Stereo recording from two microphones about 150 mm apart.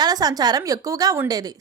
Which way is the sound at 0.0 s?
25° right (ahead or behind).